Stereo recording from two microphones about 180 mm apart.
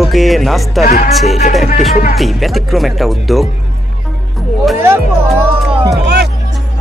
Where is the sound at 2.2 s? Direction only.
Centre (ahead or behind).